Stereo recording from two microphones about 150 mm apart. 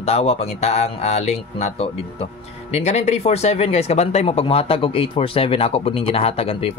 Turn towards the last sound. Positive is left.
turn(degrees=40)  # may be behind; listen again after turning